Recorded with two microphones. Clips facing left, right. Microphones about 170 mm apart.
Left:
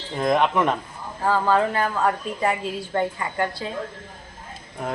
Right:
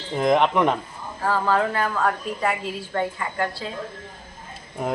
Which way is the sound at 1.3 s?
20° left (ahead or behind).